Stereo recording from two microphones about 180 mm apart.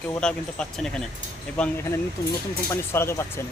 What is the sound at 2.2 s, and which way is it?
Speech, 15° left (ahead or behind).